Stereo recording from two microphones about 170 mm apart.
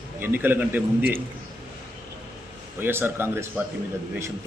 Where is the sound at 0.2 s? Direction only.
10° right (ahead or behind).